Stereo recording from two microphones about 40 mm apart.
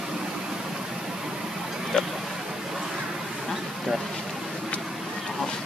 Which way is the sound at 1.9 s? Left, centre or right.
Centre.